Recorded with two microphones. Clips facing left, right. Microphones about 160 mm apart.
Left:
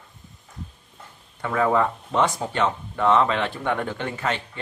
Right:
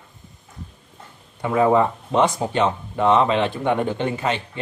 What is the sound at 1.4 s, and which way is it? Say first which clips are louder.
Speech: right 4 dB; 20° right (ahead or behind).